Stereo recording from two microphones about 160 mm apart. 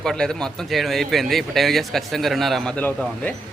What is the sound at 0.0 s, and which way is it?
Speech, 5° left (ahead or behind).